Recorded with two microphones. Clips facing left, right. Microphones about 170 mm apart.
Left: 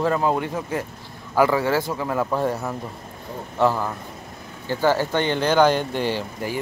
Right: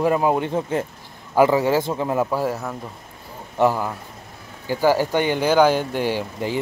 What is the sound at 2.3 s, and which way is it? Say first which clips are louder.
Speech: even; 5° right (ahead or behind).